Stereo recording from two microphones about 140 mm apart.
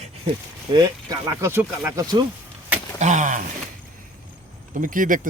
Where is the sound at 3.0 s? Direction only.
60° right (ahead or behind).